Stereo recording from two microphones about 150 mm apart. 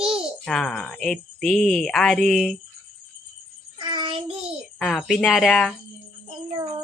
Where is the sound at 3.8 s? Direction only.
35° right (ahead or behind).